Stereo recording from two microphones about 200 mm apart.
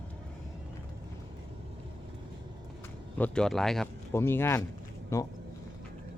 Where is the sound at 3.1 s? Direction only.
5° left (ahead or behind).